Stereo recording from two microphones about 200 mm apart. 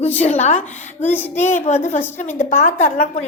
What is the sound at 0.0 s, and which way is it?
Child singing, 35° left (ahead or behind).